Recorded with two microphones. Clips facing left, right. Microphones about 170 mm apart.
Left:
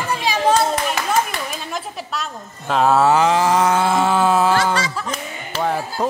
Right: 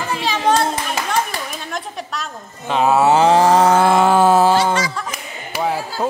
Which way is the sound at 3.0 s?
25° right (ahead or behind).